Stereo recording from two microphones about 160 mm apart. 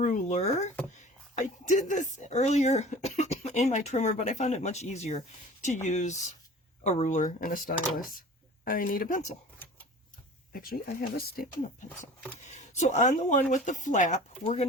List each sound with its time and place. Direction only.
0.0 s speech: 50° left (ahead or behind)
0.9 s a sound: 50° left (ahead or behind)
2.1 s speech: 45° left (ahead or behind)
10.5 s speech: 65° left (ahead or behind); by 14.7 s 40° left (ahead or behind)